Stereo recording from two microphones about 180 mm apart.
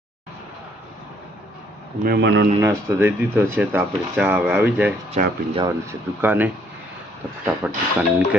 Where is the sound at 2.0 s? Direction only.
75° right (ahead or behind).